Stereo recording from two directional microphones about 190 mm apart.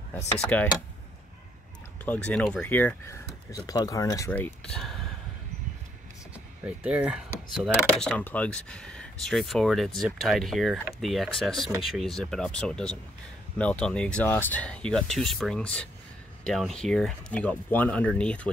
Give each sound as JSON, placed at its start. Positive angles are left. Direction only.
{"t": 0.4, "sound": "speech", "side_deg": 5}
{"t": 2.0, "sound": "speech", "side_deg": 5}
{"t": 3.5, "sound": "speech", "side_deg": 20}
{"t": 4.3, "sound": "speech", "side_deg": 5}
{"t": 6.8, "sound": "speech", "side_deg": -5}